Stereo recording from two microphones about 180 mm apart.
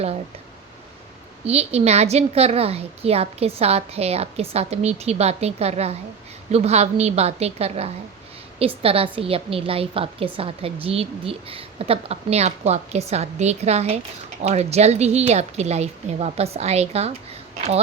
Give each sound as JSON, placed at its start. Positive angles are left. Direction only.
{"t": 1.5, "sound": "a woman's voice", "side_deg": -35}